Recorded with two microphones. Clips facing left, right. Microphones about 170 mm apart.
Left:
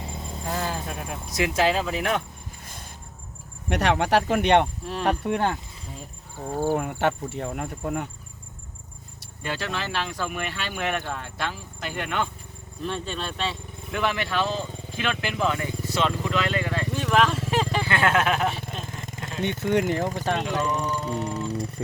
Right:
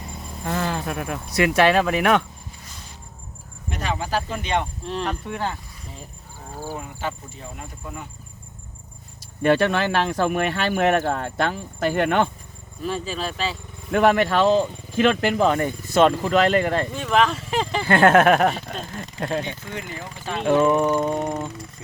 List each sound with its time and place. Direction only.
0.0 s vehicle: 25° left (ahead or behind)
0.4 s speech: 65° right (ahead or behind)
3.7 s speech: 70° left (ahead or behind)
6.7 s speech: 65° left (ahead or behind)
9.4 s speech: 60° right (ahead or behind)
12.8 s speech: 5° right (ahead or behind)
13.9 s speech: 50° right (ahead or behind)
16.9 s vehicle: centre (ahead or behind)
17.8 s speech: 50° right (ahead or behind)
18.8 s a sound: 50° left (ahead or behind)
19.5 s speech: 70° left (ahead or behind)
20.0 s speech: 45° left (ahead or behind)
20.4 s speech: 60° right (ahead or behind)